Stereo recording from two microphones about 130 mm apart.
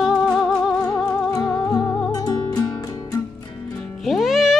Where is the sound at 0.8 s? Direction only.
25° left (ahead or behind).